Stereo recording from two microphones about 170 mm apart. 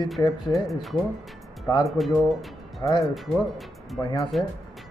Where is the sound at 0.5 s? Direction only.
Centre (ahead or behind).